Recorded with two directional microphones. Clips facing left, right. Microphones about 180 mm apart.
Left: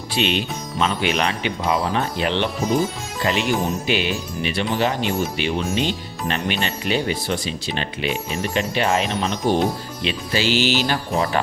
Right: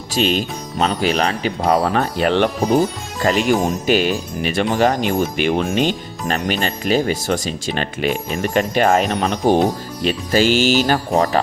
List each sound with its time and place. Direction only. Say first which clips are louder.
0.1 s speech: right 4 dB; 40° right (ahead or behind)